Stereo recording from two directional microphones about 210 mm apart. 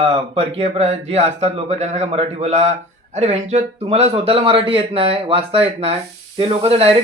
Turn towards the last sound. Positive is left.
turn(degrees=-30)  # may be behind; listen again after turning